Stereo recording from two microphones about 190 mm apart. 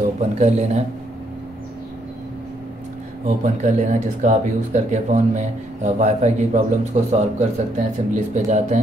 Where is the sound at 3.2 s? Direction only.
40° right (ahead or behind).